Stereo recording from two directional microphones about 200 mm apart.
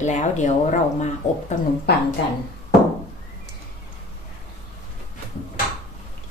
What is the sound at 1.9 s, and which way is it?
Speech, 55° left (ahead or behind).